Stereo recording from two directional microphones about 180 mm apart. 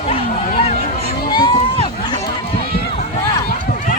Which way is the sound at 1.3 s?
25° left (ahead or behind).